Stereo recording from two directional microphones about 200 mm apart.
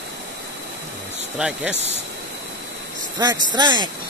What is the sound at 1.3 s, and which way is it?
Speech, 5° right (ahead or behind).